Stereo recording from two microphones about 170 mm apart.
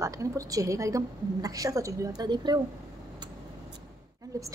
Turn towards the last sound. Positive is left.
turn(degrees=-20)  # may be behind; listen again after turning